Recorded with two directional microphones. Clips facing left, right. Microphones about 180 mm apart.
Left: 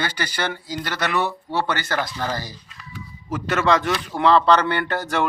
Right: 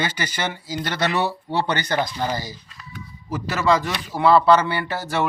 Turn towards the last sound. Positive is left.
turn(degrees=-5)  # may be behind; listen again after turning